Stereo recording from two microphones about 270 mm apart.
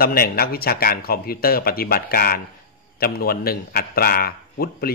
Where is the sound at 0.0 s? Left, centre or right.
Left.